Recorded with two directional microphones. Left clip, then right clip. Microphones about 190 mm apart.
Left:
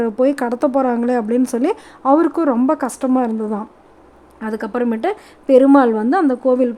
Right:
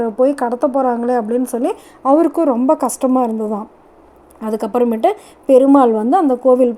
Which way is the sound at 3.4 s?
20° left (ahead or behind).